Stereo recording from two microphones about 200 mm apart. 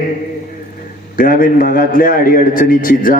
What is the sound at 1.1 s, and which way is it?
A man's voice, 45° left (ahead or behind).